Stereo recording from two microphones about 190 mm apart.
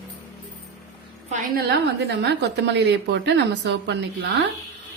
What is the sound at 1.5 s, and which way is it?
A woman's voice, 60° right (ahead or behind).